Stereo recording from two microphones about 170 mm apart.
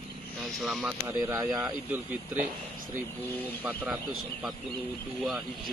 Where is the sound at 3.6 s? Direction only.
10° right (ahead or behind).